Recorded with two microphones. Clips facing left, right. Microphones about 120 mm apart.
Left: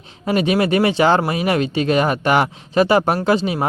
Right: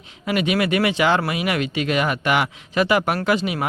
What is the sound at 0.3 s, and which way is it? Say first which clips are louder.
Speech: left 4 dB; 35° left (ahead or behind).